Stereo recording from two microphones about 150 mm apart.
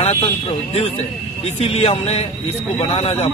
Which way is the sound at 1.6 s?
40° left (ahead or behind).